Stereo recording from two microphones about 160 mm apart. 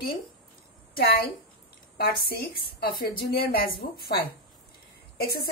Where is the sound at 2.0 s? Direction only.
70° left (ahead or behind).